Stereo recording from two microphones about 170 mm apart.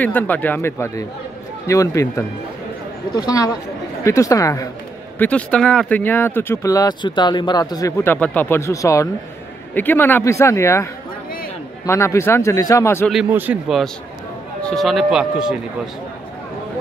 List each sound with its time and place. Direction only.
0.0 s speech: 10° left (ahead or behind)
3.3 s speech: 20° left (ahead or behind)
5.2 s speech: 5° left (ahead or behind)
13.1 s speech: 5° right (ahead or behind)